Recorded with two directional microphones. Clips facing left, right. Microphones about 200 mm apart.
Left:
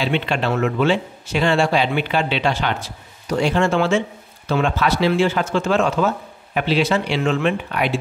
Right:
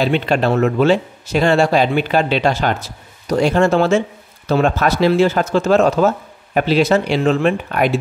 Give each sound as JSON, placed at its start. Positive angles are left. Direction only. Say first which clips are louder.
{"t": 0.0, "sound": "speech", "louder": "right 5 dB", "side_deg": -40}